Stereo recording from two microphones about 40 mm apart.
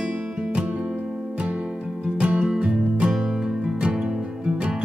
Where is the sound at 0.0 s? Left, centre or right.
Centre.